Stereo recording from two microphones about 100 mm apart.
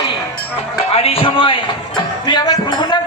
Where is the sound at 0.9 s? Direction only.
75° left (ahead or behind).